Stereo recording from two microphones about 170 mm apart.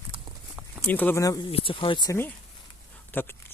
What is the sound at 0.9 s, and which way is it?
Speech, 10° left (ahead or behind).